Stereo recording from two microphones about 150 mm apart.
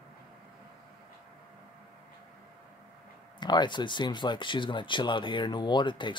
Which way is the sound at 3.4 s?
30° left (ahead or behind).